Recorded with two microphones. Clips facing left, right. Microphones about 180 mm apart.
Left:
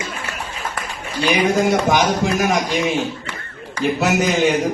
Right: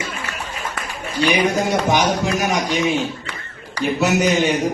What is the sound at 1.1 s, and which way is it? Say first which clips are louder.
A man's voice: left 1 dB; 55° left (ahead or behind).